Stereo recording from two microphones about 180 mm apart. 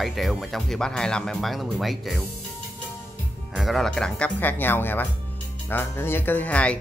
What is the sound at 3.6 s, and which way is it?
A man's voice, centre (ahead or behind).